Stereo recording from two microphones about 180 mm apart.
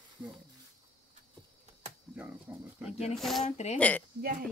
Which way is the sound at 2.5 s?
10° right (ahead or behind).